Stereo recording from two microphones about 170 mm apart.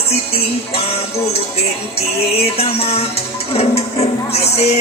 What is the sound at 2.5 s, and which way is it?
Music, 35° left (ahead or behind).